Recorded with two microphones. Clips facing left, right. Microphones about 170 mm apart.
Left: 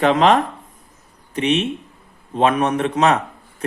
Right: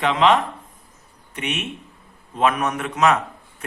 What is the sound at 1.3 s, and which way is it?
A man's voice, 35° left (ahead or behind).